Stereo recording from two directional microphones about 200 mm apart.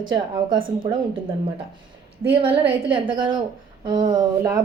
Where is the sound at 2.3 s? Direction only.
25° right (ahead or behind).